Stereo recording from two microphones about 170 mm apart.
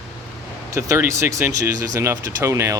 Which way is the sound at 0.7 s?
15° right (ahead or behind).